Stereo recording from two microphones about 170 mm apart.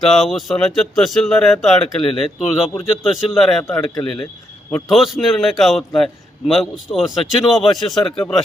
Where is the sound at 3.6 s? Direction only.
20° left (ahead or behind).